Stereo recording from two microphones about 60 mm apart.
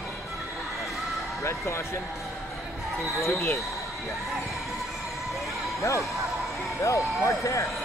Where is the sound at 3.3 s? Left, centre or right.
Left.